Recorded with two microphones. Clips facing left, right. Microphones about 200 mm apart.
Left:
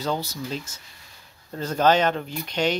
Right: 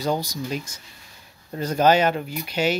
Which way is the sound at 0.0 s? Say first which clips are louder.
Right 3 dB; 15° right (ahead or behind).